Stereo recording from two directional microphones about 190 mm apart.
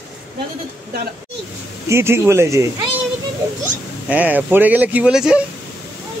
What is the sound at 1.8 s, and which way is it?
Speech, 15° right (ahead or behind).